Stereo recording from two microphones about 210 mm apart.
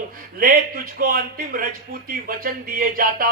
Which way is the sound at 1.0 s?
45° right (ahead or behind).